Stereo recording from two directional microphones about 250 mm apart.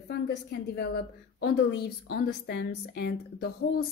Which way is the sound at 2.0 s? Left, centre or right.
Left.